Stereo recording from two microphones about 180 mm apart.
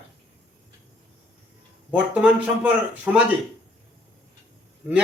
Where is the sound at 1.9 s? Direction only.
10° right (ahead or behind).